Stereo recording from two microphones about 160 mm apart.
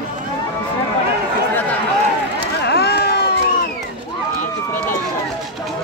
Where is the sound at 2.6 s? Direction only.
90° left.